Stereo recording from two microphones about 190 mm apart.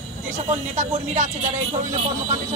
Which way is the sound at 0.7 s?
40° right (ahead or behind).